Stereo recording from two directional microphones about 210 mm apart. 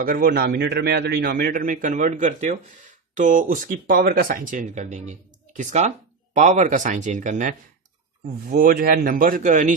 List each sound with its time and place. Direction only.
0.0 s a man's voice: 45° right (ahead or behind)